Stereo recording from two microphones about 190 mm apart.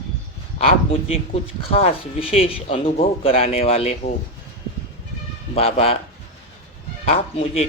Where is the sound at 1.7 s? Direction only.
30° left (ahead or behind).